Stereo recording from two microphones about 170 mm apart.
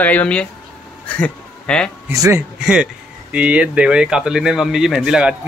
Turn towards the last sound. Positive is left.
turn(degrees=-5)  # may be behind; listen again after turning